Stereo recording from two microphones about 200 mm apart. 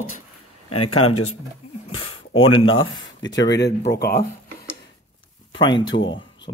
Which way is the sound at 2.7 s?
80° left.